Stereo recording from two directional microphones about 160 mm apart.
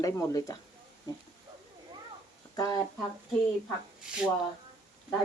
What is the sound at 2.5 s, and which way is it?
Speech, 25° left (ahead or behind).